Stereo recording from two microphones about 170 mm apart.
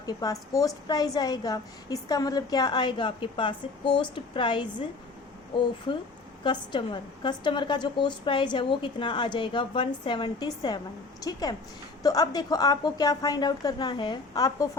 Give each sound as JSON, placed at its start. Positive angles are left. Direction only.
{"t": 0.0, "sound": "a woman's voice", "side_deg": 20}
{"t": 6.4, "sound": "a woman's voice", "side_deg": 30}